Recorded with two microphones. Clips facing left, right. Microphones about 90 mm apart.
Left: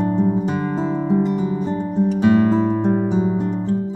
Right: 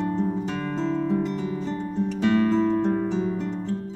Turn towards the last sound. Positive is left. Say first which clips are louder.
# left 5 dB
turn(degrees=15)  # may be behind; listen again after turning